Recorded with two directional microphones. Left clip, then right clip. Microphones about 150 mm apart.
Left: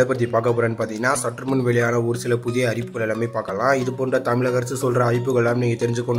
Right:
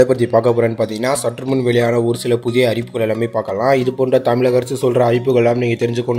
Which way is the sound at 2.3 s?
20° right (ahead or behind).